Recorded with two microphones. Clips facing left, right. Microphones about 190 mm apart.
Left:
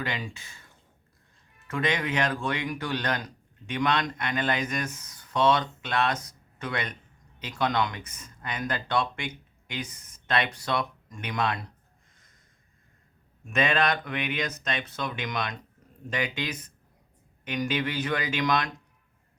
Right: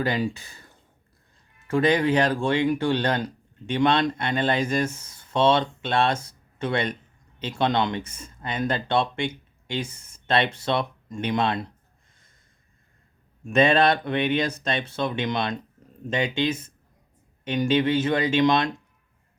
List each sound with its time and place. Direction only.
0.0 s speech: 35° right (ahead or behind)
13.4 s speech: 30° right (ahead or behind)